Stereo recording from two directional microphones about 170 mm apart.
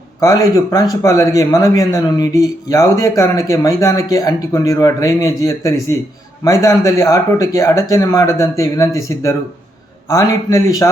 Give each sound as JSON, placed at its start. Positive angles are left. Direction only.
{"t": 0.2, "sound": "speech", "side_deg": 20}